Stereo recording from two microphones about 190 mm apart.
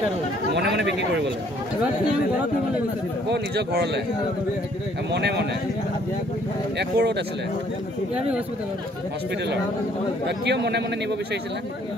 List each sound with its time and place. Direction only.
0.6 s speech: 65° right (ahead or behind)
3.3 s speech: 60° right (ahead or behind)
5.1 s speech: 60° right (ahead or behind)
6.8 s speech: 60° right (ahead or behind)
10.2 s speech: 60° right (ahead or behind)